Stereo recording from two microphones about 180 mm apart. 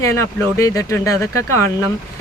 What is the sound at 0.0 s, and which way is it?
Speech, 15° left (ahead or behind).